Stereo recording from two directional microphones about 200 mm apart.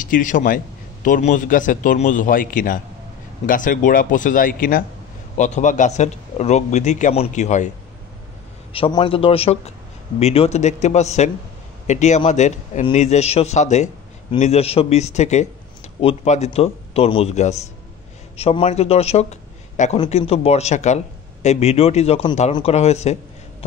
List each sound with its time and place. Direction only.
0.0 s a man's voice: 40° left (ahead or behind)
8.7 s a man's voice: 25° left (ahead or behind)